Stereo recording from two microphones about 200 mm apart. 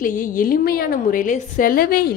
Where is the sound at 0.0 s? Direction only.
40° left (ahead or behind).